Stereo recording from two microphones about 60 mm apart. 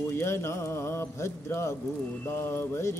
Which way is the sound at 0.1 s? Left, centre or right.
Left.